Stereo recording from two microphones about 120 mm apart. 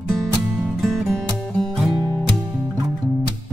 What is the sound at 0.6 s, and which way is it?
Music, centre (ahead or behind).